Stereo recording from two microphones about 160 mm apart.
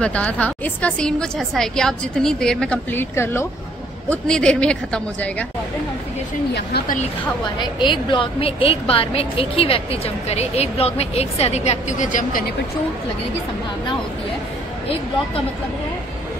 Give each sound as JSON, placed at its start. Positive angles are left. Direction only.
{"t": 0.0, "sound": "a woman's voice", "side_deg": 10}
{"t": 6.5, "sound": "speech", "side_deg": 90}
{"t": 7.6, "sound": "a woman's voice", "side_deg": 30}